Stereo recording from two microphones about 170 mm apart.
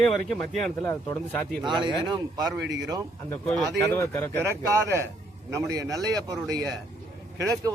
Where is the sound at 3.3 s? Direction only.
5° left (ahead or behind).